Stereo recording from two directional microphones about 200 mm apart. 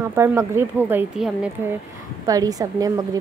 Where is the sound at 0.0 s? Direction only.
10° right (ahead or behind).